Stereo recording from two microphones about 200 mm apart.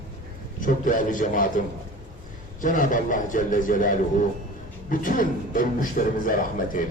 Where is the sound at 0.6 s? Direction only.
40° left (ahead or behind).